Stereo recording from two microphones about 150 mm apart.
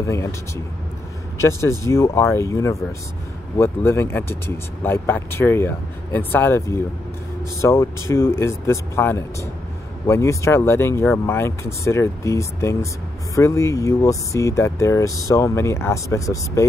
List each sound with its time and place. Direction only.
0.0 s speech: 20° left (ahead or behind)
1.4 s speech: 20° left (ahead or behind)